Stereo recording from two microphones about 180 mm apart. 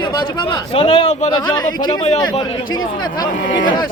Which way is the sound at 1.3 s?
25° left (ahead or behind).